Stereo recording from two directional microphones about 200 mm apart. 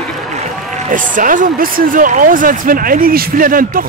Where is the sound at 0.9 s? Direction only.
40° right (ahead or behind).